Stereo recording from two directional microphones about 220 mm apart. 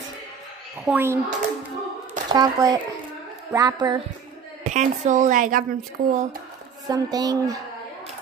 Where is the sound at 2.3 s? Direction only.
15° right (ahead or behind).